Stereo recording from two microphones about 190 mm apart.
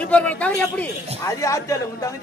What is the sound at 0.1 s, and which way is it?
A man's voice, 5° left (ahead or behind).